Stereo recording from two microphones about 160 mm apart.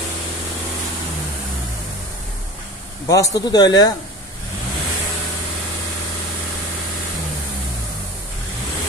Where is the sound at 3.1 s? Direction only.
25° left (ahead or behind).